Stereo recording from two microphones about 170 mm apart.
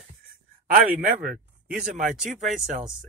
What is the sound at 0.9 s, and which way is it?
Speech, 5° right (ahead or behind).